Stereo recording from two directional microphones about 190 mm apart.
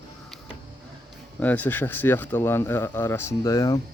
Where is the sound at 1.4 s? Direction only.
10° left (ahead or behind).